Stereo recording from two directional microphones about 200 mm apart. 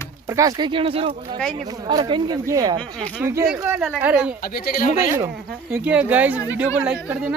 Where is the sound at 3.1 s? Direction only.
10° right (ahead or behind).